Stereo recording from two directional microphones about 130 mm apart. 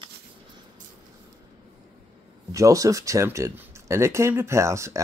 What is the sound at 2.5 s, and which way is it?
Speech, 25° right (ahead or behind).